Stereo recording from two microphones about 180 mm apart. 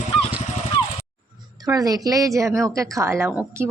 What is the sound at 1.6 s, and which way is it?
A woman's voice, 20° right (ahead or behind).